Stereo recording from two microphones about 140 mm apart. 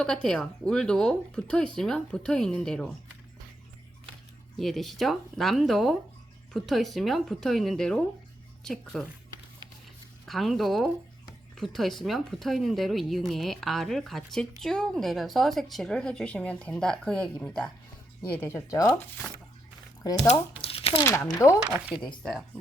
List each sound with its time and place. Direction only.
0.0 s speech: 5° left (ahead or behind)
4.5 s speech: centre (ahead or behind)
10.2 s speech: centre (ahead or behind)
18.3 s speech: 15° left (ahead or behind)
20.3 s crumpling: 40° left (ahead or behind)
21.0 s speech: 20° left (ahead or behind)
22.0 s speech: 5° left (ahead or behind)